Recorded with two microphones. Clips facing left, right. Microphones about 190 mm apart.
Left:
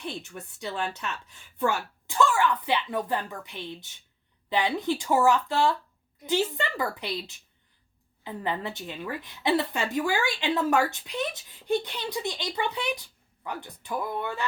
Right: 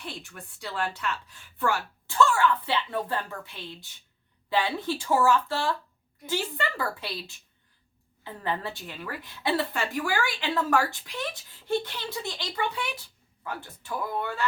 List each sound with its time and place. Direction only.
0.0 s a woman's voice: 20° left (ahead or behind)